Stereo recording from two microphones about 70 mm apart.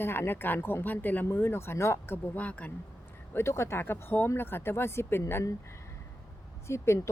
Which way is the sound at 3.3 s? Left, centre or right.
Left.